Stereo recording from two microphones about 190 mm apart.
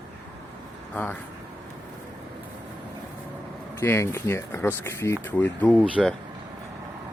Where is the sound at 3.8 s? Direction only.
15° left (ahead or behind).